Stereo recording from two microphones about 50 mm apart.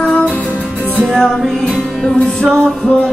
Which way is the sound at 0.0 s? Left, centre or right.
Left.